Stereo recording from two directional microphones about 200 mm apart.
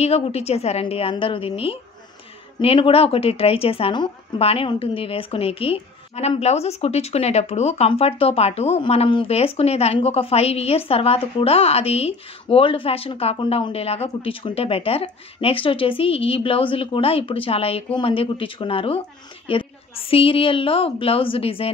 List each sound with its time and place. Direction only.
0.0 s speech: 30° left (ahead or behind)